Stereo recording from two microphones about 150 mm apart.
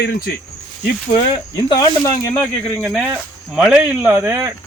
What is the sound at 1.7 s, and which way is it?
Speech, 25° left (ahead or behind).